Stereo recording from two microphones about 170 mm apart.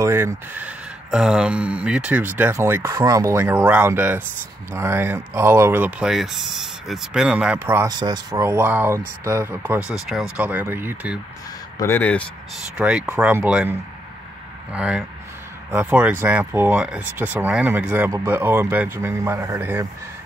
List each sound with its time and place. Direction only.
0.0 s speech: 15° right (ahead or behind)
7.9 s speech: 25° right (ahead or behind)
11.8 s speech: 10° left (ahead or behind)
12.7 s speech: 5° right (ahead or behind)